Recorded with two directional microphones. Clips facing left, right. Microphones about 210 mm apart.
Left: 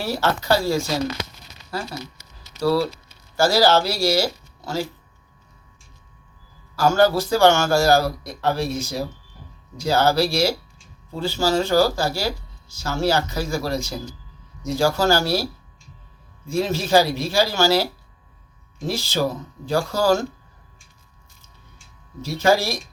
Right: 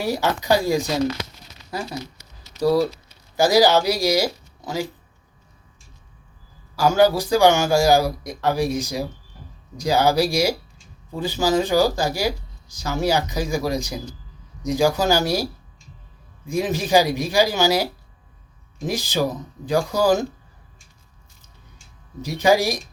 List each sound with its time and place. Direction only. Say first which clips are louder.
0.0 s speech: right 1 dB; 15° right (ahead or behind)
6.7 s speech: right 1 dB; 15° right (ahead or behind)
16.5 s speech: even; 15° right (ahead or behind)
18.9 s speech: even; 15° right (ahead or behind)
22.2 s speech: right 1 dB; 15° right (ahead or behind)